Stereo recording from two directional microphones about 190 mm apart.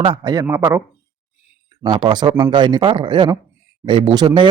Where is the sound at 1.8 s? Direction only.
25° right (ahead or behind).